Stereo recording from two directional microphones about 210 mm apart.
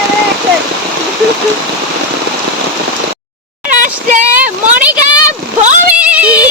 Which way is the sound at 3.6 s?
35° right (ahead or behind).